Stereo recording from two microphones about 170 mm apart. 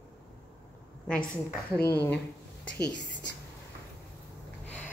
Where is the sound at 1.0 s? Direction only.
5° left (ahead or behind).